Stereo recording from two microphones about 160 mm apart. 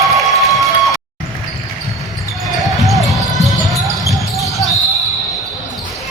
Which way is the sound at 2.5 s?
Centre (ahead or behind).